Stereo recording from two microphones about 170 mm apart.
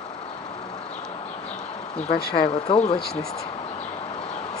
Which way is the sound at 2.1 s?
60° left (ahead or behind).